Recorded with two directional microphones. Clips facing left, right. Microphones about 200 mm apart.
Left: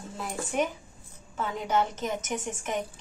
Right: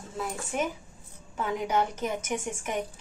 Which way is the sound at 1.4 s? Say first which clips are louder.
Even; 10° right (ahead or behind).